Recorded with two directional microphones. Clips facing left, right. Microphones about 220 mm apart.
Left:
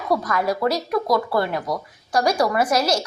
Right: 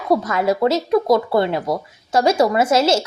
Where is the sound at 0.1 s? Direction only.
25° right (ahead or behind).